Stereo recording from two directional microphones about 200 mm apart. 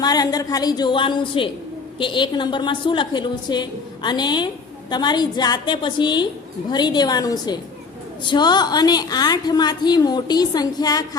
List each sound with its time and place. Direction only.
0.0 s a woman's voice: 20° left (ahead or behind)